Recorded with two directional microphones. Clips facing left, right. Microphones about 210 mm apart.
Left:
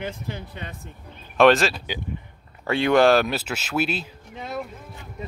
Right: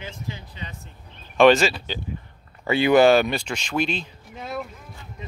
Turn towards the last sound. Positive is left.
turn(degrees=0)  # may be behind; listen again after turning